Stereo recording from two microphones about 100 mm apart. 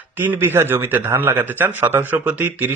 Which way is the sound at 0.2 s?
20° right (ahead or behind).